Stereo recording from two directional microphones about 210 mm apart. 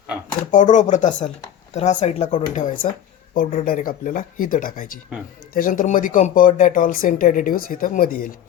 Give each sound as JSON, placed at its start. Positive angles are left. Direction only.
{"t": 0.5, "sound": "speech", "side_deg": 35}